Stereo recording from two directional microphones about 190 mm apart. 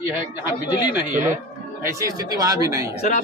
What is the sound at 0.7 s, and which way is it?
Speech, 25° left (ahead or behind).